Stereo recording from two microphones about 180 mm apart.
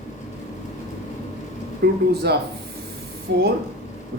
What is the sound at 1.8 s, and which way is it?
Speech, 65° right (ahead or behind).